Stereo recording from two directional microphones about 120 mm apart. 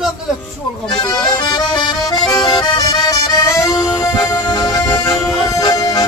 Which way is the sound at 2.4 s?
40° left (ahead or behind).